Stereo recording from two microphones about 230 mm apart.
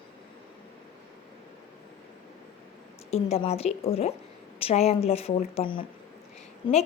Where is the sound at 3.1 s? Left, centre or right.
Left.